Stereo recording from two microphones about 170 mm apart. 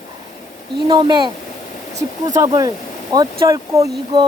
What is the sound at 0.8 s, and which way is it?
Speech, 25° right (ahead or behind).